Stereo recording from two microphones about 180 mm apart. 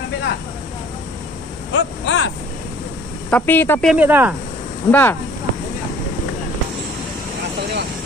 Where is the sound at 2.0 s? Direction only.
90° left.